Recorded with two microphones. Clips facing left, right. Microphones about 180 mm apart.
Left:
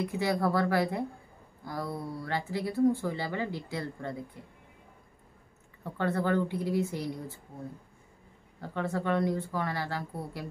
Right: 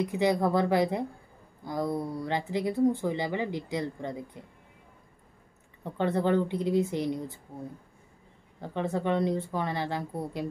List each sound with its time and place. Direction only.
0.0 s speech: 20° right (ahead or behind)
5.9 s speech: 20° right (ahead or behind)
8.5 s speech: 20° right (ahead or behind)